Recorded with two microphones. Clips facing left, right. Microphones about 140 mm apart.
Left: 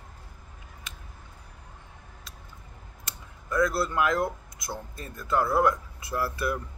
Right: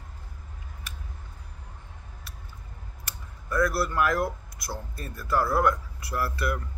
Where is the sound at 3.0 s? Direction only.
20° left (ahead or behind).